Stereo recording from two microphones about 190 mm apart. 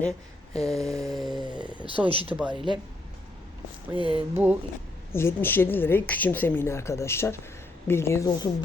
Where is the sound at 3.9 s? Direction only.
25° right (ahead or behind).